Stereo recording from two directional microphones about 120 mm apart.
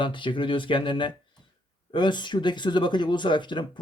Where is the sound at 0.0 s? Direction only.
45° left (ahead or behind).